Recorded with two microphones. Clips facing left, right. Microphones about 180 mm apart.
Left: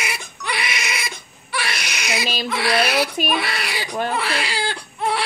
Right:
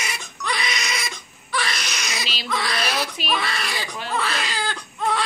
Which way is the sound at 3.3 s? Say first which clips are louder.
Left 2 dB; 10° left (ahead or behind).